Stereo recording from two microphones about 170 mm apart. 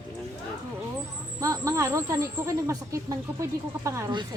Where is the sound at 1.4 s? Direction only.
20° right (ahead or behind).